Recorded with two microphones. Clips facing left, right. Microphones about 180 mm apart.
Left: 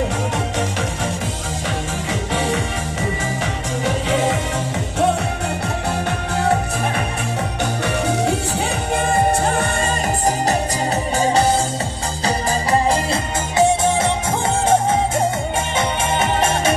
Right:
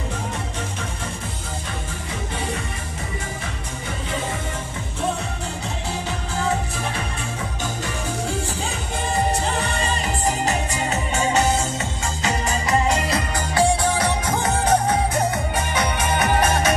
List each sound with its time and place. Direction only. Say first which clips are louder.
2.3 s music: left 8 dB; 90° left
3.8 s music: left 10 dB; 90° left
7.8 s music: left 9 dB; 70° left (ahead or behind); by 16.7 s 25° left (ahead or behind)